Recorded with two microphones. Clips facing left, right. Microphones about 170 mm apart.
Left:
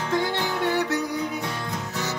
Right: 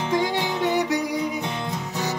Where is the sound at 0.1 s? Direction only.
15° right (ahead or behind).